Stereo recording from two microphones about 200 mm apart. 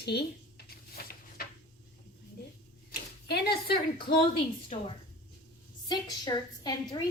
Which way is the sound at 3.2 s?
55° left (ahead or behind).